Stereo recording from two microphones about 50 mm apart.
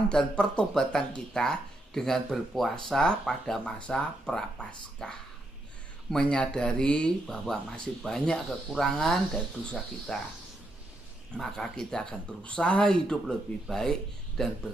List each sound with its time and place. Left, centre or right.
0.1 s speech: centre
7.2 s speech: centre
11.3 s speech: centre
12.4 s speech: left